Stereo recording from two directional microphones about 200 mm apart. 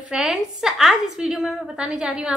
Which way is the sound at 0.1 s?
Centre (ahead or behind).